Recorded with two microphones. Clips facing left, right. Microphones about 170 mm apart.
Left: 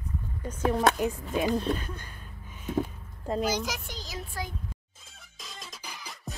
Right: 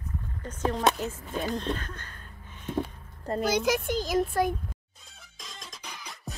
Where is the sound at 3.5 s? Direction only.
60° right (ahead or behind).